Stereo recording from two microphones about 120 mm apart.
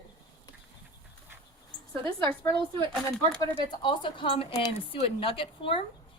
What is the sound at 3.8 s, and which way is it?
A woman's voice, 45° left (ahead or behind).